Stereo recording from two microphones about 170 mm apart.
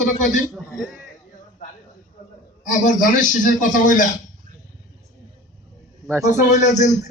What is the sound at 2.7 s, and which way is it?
Speech, 50° left (ahead or behind).